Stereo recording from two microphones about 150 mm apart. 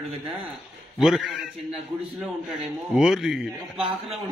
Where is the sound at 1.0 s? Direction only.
Centre (ahead or behind).